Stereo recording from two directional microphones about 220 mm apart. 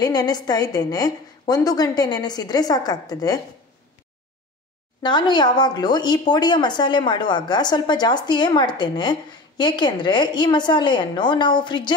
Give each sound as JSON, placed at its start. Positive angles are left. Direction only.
{"t": 0.0, "sound": "a woman's voice", "side_deg": 15}
{"t": 5.0, "sound": "a woman's voice", "side_deg": 20}